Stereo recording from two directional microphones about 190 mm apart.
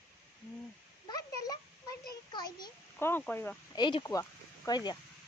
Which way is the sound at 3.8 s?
25° left (ahead or behind).